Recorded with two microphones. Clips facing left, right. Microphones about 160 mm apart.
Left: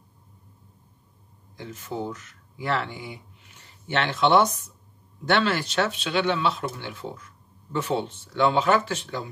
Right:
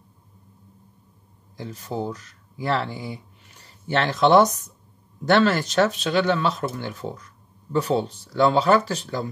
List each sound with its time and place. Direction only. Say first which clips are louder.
1.6 s speech: right 3 dB; 35° right (ahead or behind)